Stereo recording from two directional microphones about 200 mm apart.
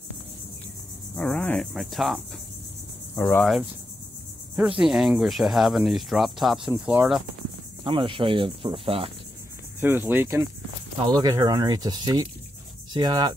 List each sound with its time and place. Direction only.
1.1 s cricket: 5° left (ahead or behind)
3.2 s speech: 5° left (ahead or behind)
7.8 s cricket: 25° right (ahead or behind)
9.8 s speech: 10° right (ahead or behind)
11.1 s cricket: 20° right (ahead or behind)